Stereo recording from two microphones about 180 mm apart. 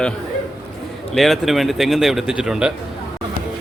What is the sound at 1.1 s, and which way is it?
Speech, centre (ahead or behind).